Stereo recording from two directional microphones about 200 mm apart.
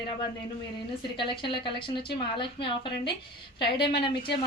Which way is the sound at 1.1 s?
25° left (ahead or behind).